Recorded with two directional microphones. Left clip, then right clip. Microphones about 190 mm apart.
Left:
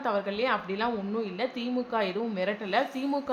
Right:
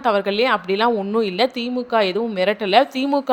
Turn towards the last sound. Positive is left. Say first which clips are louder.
# right 12 dB
turn(degrees=-45)  # may be behind; listen again after turning